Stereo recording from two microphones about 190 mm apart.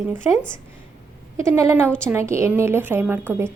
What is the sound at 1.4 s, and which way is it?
A woman's voice, 15° right (ahead or behind).